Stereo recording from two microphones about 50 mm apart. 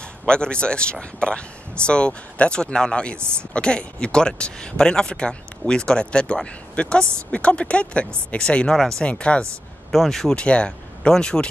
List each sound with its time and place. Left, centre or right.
0.3 s speech: centre
9.0 s speech: left
9.8 s speech: centre
10.3 s speech: left